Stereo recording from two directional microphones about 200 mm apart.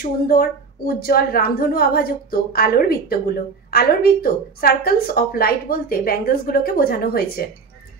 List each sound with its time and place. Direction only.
0.0 s a woman's voice: 50° left (ahead or behind)